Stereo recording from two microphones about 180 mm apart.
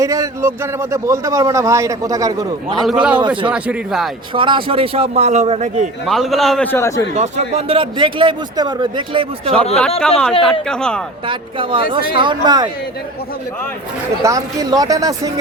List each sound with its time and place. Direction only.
0.0 s a man's voice: 20° right (ahead or behind)
2.8 s a man's voice: 5° right (ahead or behind)
4.4 s a man's voice: 30° right (ahead or behind)
6.1 s a man's voice: centre (ahead or behind)
7.2 s a man's voice: 35° right (ahead or behind)
10.0 s a man's voice: 5° left (ahead or behind)
11.3 s a man's voice: 30° right (ahead or behind)
14.2 s a man's voice: 20° right (ahead or behind)